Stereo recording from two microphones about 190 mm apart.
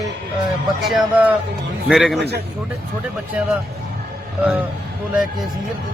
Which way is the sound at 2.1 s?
60° right (ahead or behind).